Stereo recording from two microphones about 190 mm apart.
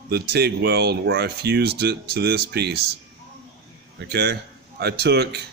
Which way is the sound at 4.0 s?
60° right (ahead or behind).